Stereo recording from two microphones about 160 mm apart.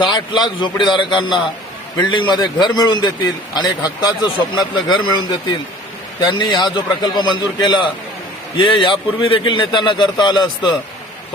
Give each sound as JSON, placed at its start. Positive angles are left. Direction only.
{"t": 0.1, "sound": "a man's voice", "side_deg": 25}